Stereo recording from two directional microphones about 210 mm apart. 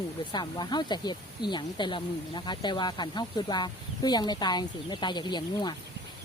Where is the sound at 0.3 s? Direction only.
20° left (ahead or behind).